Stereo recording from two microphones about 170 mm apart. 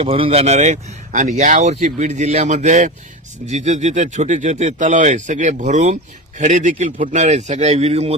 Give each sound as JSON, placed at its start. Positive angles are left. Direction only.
{"t": 0.0, "sound": "speech", "side_deg": -35}